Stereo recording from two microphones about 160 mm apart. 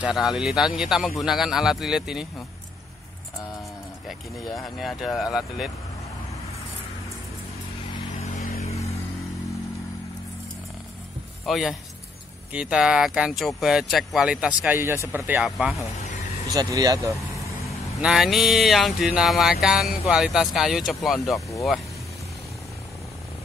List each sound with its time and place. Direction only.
0.0 s speech: 5° right (ahead or behind)
4.1 s speech: centre (ahead or behind)
8.5 s vehicle: 40° left (ahead or behind)
11.4 s speech: centre (ahead or behind)
15.4 s speech: centre (ahead or behind)
16.5 s speech: 25° right (ahead or behind)
17.6 s speech: centre (ahead or behind)